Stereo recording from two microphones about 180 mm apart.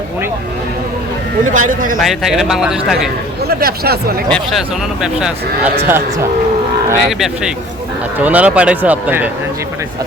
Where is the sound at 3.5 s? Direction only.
60° right (ahead or behind).